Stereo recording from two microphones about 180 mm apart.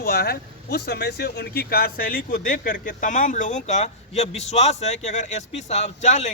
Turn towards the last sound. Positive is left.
turn(degrees=40)  # may be behind; listen again after turning